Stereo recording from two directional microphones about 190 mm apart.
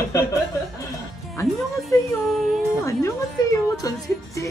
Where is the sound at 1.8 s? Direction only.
Centre (ahead or behind).